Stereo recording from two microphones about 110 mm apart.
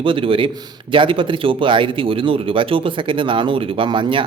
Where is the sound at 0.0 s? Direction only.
50° right (ahead or behind).